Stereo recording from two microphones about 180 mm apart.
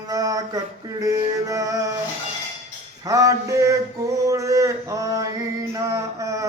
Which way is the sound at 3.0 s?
20° right (ahead or behind).